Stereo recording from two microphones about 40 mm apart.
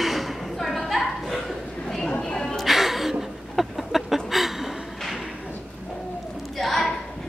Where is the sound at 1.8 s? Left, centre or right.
Centre.